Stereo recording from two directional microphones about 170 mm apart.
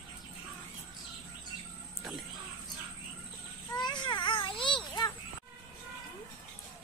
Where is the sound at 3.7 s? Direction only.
25° left (ahead or behind).